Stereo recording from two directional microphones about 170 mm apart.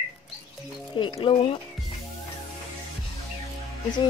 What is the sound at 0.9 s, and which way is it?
Speech, 30° left (ahead or behind).